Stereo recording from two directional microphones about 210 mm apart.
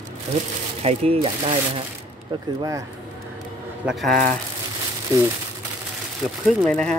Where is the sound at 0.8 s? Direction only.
30° right (ahead or behind).